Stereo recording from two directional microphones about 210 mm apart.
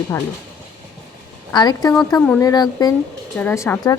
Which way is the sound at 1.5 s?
20° left (ahead or behind).